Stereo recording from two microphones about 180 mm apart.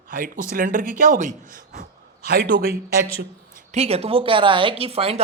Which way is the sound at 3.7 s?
35° right (ahead or behind).